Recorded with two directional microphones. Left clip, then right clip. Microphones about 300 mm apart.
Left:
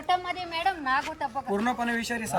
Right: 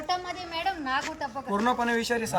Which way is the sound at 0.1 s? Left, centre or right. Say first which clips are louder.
Left 4 dB; left.